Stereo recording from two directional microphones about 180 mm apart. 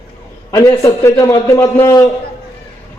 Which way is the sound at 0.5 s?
15° left (ahead or behind).